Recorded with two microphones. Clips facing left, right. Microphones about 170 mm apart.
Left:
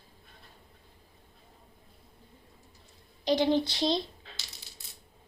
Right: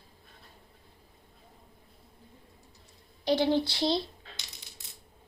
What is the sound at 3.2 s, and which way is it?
Speech, 15° left (ahead or behind).